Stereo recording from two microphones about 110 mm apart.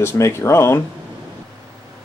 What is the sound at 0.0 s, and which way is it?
Speech, 25° left (ahead or behind).